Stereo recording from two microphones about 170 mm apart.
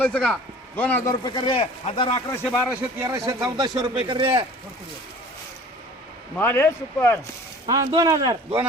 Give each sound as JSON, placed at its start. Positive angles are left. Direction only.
{"t": 0.0, "sound": "speech", "side_deg": 5}
{"t": 1.2, "sound": "speech", "side_deg": 25}
{"t": 2.4, "sound": "speech", "side_deg": -5}
{"t": 3.1, "sound": "speech", "side_deg": -20}
{"t": 6.3, "sound": "speech", "side_deg": 10}
{"t": 7.7, "sound": "speech", "side_deg": -20}